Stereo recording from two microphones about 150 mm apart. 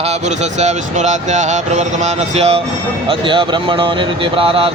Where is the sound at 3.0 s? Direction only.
35° right (ahead or behind).